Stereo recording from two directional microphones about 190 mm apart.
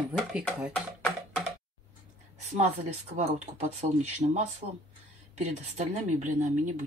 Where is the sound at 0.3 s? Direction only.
5° right (ahead or behind).